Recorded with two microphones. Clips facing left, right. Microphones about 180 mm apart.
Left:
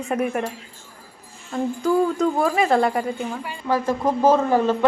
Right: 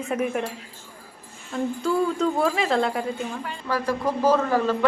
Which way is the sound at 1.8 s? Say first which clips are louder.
Left 4 dB; 10° left (ahead or behind).